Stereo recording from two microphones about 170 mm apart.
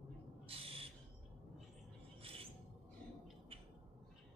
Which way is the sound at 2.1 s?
35° right (ahead or behind).